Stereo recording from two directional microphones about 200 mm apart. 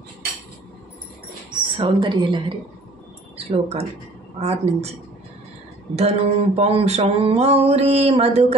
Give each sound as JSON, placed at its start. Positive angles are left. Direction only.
{"t": 1.5, "sound": "speech", "side_deg": -20}
{"t": 4.4, "sound": "mantra", "side_deg": -30}
{"t": 5.9, "sound": "mantra", "side_deg": -30}